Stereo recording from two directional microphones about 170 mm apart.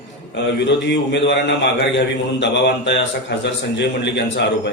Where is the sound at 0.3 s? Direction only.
90° left.